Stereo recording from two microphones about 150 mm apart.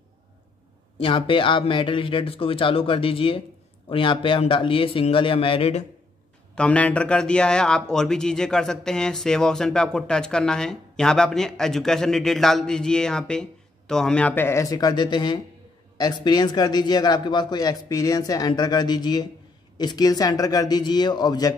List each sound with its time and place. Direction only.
0.9 s speech: 35° left (ahead or behind)
6.5 s a man's voice: 10° left (ahead or behind); by 21.5 s 25° left (ahead or behind)